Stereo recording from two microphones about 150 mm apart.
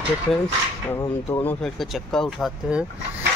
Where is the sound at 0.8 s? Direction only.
20° left (ahead or behind).